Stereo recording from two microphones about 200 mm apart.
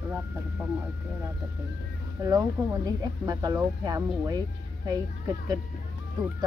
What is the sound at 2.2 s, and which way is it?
Speech, 15° right (ahead or behind).